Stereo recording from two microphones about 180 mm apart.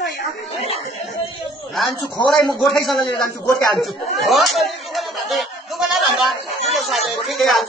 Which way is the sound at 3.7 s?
Centre (ahead or behind).